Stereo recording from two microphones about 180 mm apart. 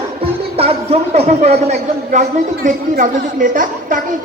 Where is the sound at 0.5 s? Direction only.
35° right (ahead or behind).